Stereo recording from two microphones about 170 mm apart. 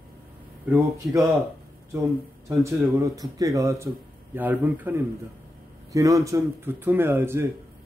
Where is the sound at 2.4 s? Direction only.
15° right (ahead or behind).